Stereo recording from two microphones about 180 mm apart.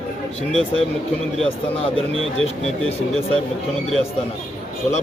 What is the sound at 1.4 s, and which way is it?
Speech, 30° left (ahead or behind).